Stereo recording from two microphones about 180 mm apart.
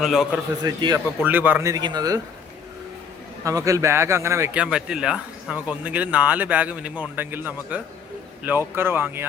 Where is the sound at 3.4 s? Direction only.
20° right (ahead or behind).